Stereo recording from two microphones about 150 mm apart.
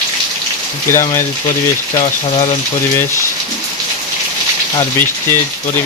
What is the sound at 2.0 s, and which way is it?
Speech, 40° left (ahead or behind).